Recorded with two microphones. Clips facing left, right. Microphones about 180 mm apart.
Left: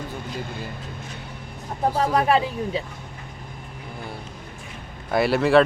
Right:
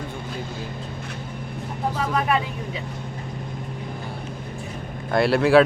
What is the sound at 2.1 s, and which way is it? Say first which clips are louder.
Speech: left 3 dB; 30° left (ahead or behind).